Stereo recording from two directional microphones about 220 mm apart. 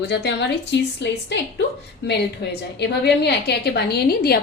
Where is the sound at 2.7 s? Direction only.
50° left (ahead or behind).